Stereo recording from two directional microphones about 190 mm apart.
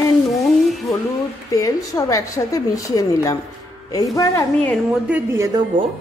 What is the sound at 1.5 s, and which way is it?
A woman's voice, 20° left (ahead or behind).